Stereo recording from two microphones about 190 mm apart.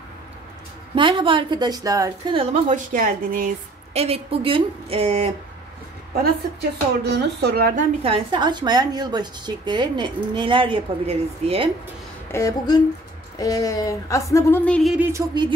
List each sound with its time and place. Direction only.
0.9 s a woman's voice: 25° right (ahead or behind)
2.5 s a woman's voice: 40° right (ahead or behind)
7.1 s speech: 60° right (ahead or behind)
8.0 s a woman's voice: 25° right (ahead or behind)
12.3 s a woman's voice: 15° left (ahead or behind); by 15.0 s centre (ahead or behind)
15.0 s a woman's voice: 20° right (ahead or behind)